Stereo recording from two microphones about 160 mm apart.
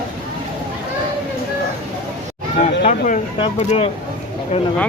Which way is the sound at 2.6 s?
45° left (ahead or behind).